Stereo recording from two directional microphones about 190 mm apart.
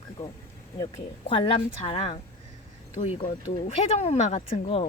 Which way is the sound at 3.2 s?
35° left (ahead or behind).